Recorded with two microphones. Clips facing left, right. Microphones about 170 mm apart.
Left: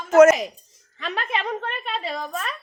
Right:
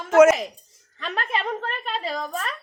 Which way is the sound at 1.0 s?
Centre (ahead or behind).